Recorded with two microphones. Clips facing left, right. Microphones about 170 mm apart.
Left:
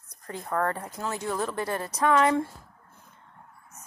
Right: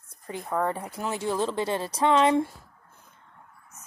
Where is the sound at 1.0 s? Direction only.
25° right (ahead or behind).